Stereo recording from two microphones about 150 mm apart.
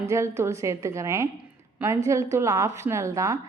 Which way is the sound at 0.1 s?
20° right (ahead or behind).